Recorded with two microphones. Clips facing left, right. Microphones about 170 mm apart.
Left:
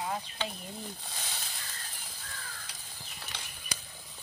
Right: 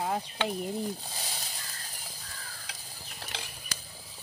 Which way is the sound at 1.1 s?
35° right (ahead or behind).